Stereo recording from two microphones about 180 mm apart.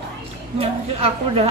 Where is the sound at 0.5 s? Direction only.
35° right (ahead or behind).